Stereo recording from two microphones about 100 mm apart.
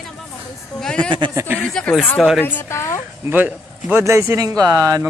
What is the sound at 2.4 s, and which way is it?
Speech, 20° left (ahead or behind).